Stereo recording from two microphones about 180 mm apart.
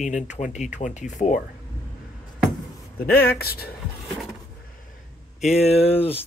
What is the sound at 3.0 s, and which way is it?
Speech, 55° left (ahead or behind).